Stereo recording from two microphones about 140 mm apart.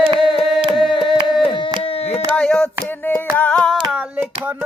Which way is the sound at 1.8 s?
45° left (ahead or behind).